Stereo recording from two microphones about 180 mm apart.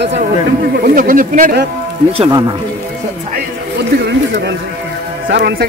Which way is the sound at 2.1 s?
30° right (ahead or behind).